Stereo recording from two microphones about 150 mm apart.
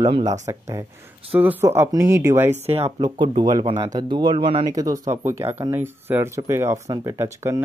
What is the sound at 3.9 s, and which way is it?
Speech, 30° right (ahead or behind).